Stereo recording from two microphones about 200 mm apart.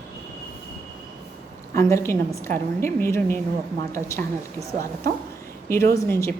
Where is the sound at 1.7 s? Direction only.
15° left (ahead or behind).